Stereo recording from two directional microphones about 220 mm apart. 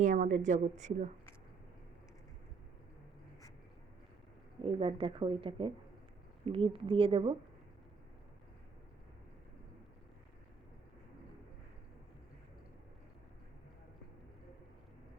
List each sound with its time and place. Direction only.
0.0 s a woman's voice: 35° right (ahead or behind)
4.6 s speech: 25° right (ahead or behind)